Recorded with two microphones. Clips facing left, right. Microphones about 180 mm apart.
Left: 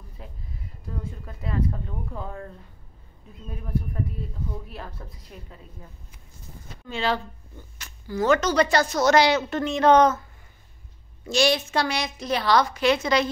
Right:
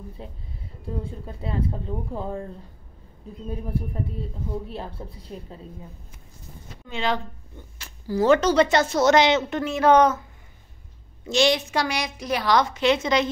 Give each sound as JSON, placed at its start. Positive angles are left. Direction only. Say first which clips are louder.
{"t": 0.2, "sound": "a woman's voice", "louder": "right 3 dB", "side_deg": -30}
{"t": 6.9, "sound": "a woman's voice", "louder": "even", "side_deg": -20}
{"t": 7.8, "sound": "a woman's voice", "louder": "right 3 dB", "side_deg": -30}
{"t": 9.6, "sound": "a woman's voice", "louder": "even", "side_deg": -10}
{"t": 11.2, "sound": "a woman's voice", "louder": "right 1 dB", "side_deg": -20}